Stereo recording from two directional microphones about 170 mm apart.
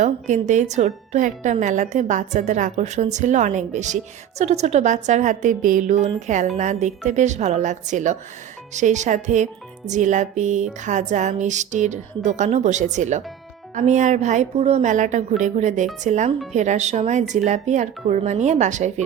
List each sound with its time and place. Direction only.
0.0 s a woman's voice: 45° right (ahead or behind)